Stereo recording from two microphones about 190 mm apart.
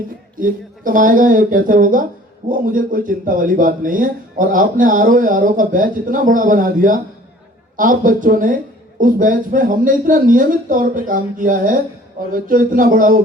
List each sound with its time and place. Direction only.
0.3 s a man's voice: 45° right (ahead or behind)